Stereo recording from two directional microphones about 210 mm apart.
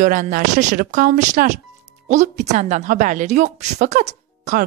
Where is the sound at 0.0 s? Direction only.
40° right (ahead or behind).